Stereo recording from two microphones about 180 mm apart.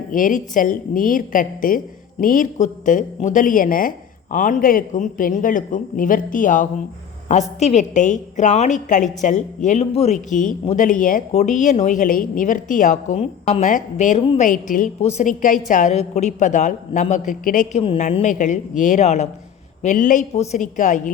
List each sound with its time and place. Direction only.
0.1 s a woman's voice: 45° left (ahead or behind)